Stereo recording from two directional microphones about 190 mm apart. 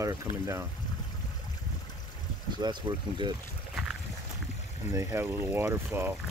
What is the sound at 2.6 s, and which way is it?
Speech, 25° right (ahead or behind).